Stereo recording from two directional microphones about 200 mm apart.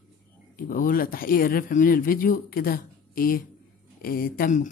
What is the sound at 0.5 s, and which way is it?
Speech, 45° left (ahead or behind).